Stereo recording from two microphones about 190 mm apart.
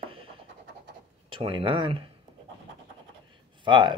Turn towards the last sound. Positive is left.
turn(degrees=-25)  # may be behind; listen again after turning